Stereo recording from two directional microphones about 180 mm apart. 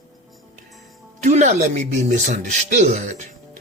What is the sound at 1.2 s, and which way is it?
Speech, 40° right (ahead or behind).